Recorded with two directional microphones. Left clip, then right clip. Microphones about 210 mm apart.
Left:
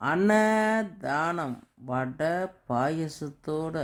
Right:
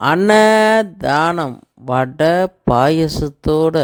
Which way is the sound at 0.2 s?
40° right (ahead or behind).